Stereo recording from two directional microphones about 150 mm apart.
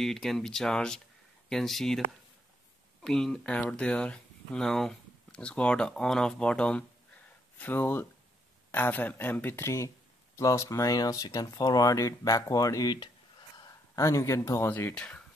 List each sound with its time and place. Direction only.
0.0 s speech: centre (ahead or behind)
3.0 s speech: 5° left (ahead or behind)